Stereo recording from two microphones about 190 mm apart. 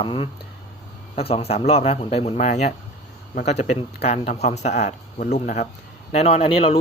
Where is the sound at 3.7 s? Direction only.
35° left (ahead or behind).